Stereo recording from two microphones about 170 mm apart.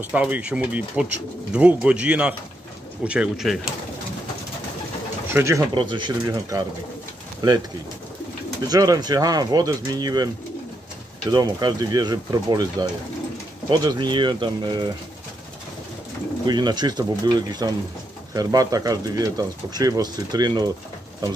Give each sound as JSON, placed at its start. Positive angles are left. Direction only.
{"t": 0.0, "sound": "speech", "side_deg": -10}
{"t": 5.3, "sound": "speech", "side_deg": -15}
{"t": 5.9, "sound": "speech", "side_deg": -25}
{"t": 8.6, "sound": "speech", "side_deg": -20}
{"t": 11.3, "sound": "speech", "side_deg": -20}
{"t": 13.7, "sound": "speech", "side_deg": -25}
{"t": 16.4, "sound": "speech", "side_deg": -25}